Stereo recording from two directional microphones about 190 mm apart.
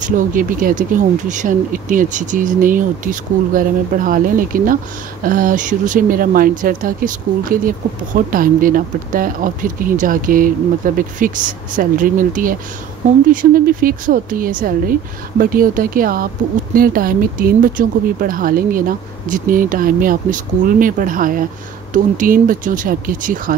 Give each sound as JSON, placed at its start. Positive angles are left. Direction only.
{"t": 0.0, "sound": "speech", "side_deg": -45}